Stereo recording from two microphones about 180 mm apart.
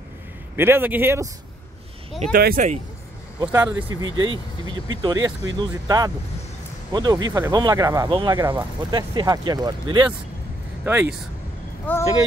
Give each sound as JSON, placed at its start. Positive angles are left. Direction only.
{"t": 0.6, "sound": "a man's voice", "side_deg": -10}
{"t": 2.3, "sound": "speech", "side_deg": -50}
{"t": 3.3, "sound": "a man's voice", "side_deg": -15}
{"t": 3.9, "sound": "speech", "side_deg": -25}
{"t": 10.9, "sound": "a man's voice", "side_deg": -10}
{"t": 11.9, "sound": "speech", "side_deg": 10}